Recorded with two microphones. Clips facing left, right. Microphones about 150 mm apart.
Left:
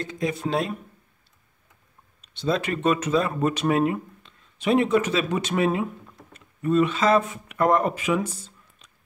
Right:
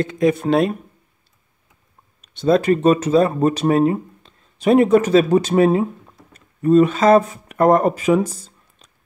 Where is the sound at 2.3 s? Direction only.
50° right (ahead or behind).